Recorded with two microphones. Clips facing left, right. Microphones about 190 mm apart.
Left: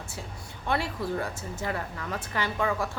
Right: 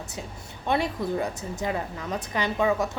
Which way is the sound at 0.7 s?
20° right (ahead or behind).